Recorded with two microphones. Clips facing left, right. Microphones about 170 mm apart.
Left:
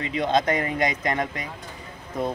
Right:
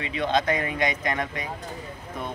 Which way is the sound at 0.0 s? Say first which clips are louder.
Left 2 dB; 35° left (ahead or behind).